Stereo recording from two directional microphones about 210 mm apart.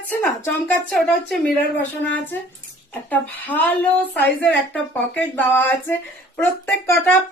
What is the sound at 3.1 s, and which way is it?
Speech, 10° left (ahead or behind).